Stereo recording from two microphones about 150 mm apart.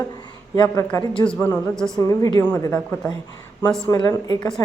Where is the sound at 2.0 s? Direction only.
25° left (ahead or behind).